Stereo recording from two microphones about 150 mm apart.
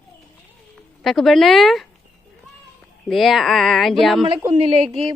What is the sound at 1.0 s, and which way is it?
Speech, centre (ahead or behind).